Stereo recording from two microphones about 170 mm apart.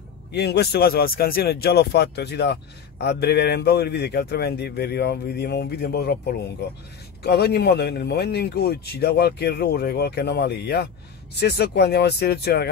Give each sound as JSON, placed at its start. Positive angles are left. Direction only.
{"t": 0.3, "sound": "speech", "side_deg": 75}
{"t": 7.2, "sound": "speech", "side_deg": 70}